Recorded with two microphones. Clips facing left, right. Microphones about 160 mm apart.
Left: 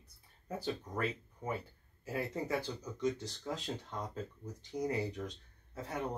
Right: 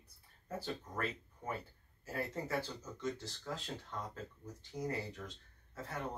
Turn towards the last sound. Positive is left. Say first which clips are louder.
# left 4 dB
turn(degrees=15)  # may be behind; listen again after turning